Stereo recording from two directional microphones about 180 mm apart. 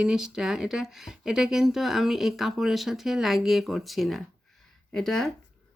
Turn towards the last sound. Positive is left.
turn(degrees=5)  # may be behind; listen again after turning